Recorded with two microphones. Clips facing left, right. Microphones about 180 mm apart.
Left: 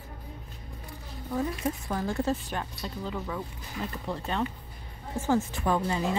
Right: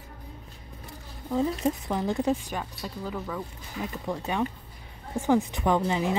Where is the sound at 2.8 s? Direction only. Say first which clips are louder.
Right 1 dB; centre (ahead or behind).